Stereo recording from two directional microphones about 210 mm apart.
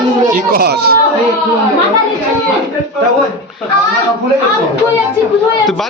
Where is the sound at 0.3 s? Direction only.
45° right (ahead or behind).